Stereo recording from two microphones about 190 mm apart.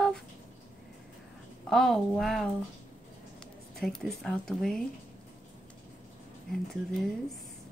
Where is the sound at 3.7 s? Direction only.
Centre (ahead or behind).